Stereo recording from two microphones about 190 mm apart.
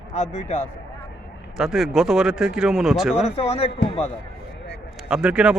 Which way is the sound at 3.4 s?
35° left (ahead or behind).